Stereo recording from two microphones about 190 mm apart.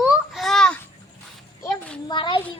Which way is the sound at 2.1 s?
25° left (ahead or behind).